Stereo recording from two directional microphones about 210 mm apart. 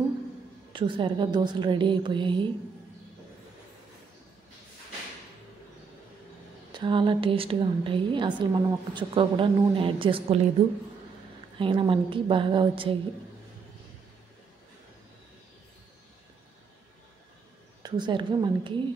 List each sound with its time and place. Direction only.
0.7 s a woman's voice: 25° right (ahead or behind)
6.7 s a woman's voice: 25° right (ahead or behind)
11.5 s a woman's voice: 25° right (ahead or behind)
17.8 s a woman's voice: 20° right (ahead or behind)